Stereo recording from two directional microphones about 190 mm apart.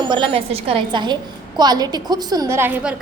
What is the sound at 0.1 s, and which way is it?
A woman's voice, 30° right (ahead or behind).